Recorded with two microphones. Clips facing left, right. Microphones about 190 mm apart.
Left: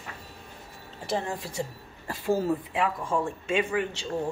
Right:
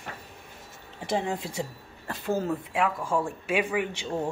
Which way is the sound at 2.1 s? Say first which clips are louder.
Left 2 dB; 5° left (ahead or behind).